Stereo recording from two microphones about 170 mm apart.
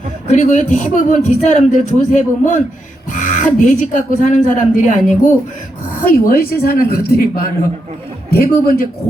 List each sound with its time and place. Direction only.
0.3 s speech: 45° left (ahead or behind)
6.2 s speech: 60° left (ahead or behind)